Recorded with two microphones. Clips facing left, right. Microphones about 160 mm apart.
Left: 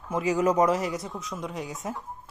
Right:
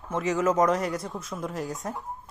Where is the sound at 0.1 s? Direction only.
10° left (ahead or behind).